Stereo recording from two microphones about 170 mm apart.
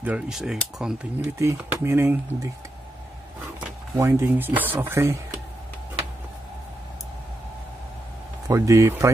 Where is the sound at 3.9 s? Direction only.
15° right (ahead or behind).